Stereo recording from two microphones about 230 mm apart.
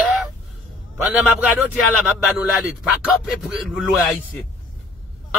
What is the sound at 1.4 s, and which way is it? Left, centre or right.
Speech, centre.